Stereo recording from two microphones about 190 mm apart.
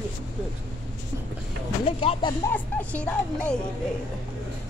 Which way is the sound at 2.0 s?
30° left (ahead or behind).